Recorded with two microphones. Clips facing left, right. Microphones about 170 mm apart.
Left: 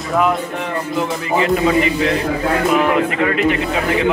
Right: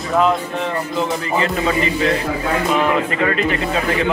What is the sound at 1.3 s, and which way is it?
Speech, 15° left (ahead or behind).